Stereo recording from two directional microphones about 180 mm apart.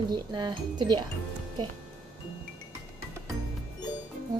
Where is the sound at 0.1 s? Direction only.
25° right (ahead or behind).